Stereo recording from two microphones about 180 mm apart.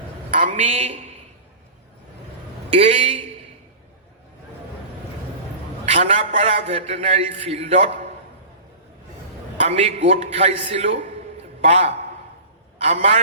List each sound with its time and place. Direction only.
0.3 s a woman's voice: 40° right (ahead or behind)
2.7 s a man's voice: 35° right (ahead or behind)
5.9 s a man's voice: 40° right (ahead or behind)
9.6 s a man's voice: 35° right (ahead or behind)